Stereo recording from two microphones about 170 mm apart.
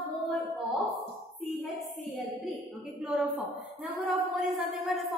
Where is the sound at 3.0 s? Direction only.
5° right (ahead or behind).